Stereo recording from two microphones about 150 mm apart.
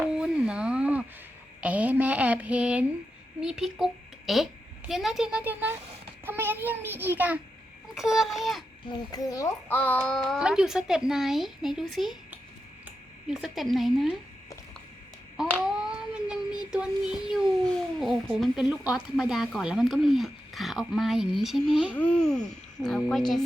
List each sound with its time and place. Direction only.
0.0 s a sound: 5° right (ahead or behind)
3.4 s a child's voice: 5° right (ahead or behind)
6.2 s a sound: 15° right (ahead or behind)
7.9 s a child's voice: 5° right (ahead or behind)
9.1 s a child's voice: 25° left (ahead or behind)
9.6 s a child's voice: 10° left (ahead or behind)
15.4 s child singing: 5° right (ahead or behind)
21.9 s a child's voice: 10° left (ahead or behind)